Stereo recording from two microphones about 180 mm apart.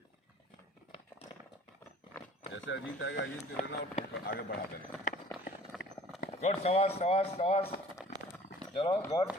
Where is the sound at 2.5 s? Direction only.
90° left.